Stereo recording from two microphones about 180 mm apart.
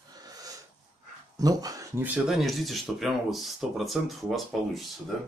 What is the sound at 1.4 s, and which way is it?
Speech, 20° right (ahead or behind).